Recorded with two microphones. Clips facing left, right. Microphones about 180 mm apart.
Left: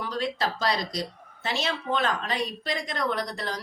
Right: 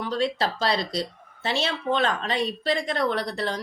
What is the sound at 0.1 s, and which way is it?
Speech, 30° right (ahead or behind).